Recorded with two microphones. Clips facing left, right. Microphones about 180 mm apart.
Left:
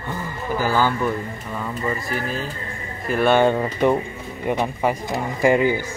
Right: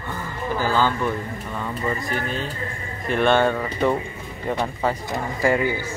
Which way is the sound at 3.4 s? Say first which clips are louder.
Left 3 dB; 20° left (ahead or behind).